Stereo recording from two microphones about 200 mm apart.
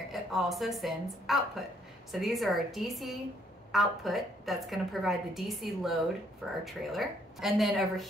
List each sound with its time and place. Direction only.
0.1 s a woman's voice: centre (ahead or behind)